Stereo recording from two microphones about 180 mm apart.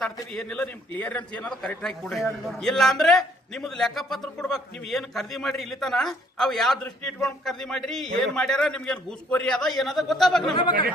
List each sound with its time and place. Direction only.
0.3 s a man's voice: 5° left (ahead or behind)
10.5 s speech: 25° left (ahead or behind)